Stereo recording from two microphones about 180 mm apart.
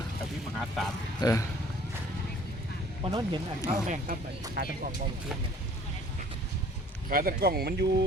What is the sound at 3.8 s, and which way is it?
Speech, 45° right (ahead or behind).